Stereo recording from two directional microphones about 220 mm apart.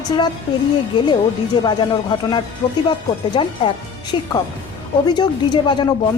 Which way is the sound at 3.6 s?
20° left (ahead or behind).